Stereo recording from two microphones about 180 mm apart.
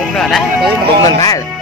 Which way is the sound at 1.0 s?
20° left (ahead or behind).